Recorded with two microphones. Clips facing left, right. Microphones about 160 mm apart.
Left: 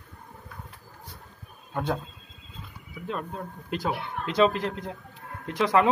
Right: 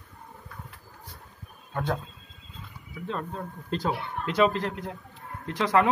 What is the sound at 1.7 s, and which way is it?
Speech, 15° left (ahead or behind).